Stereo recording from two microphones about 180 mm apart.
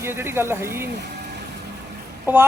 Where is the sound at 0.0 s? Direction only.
15° right (ahead or behind).